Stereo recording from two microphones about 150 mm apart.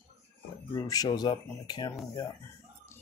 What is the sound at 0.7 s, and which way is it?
Speech, 25° left (ahead or behind).